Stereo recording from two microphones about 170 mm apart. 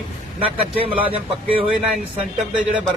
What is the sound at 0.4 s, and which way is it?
Speech, 35° right (ahead or behind).